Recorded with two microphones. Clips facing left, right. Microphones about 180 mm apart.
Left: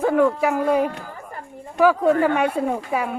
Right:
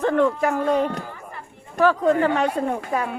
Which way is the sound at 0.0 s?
10° left (ahead or behind).